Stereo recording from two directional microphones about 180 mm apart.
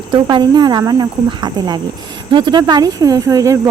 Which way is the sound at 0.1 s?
25° right (ahead or behind).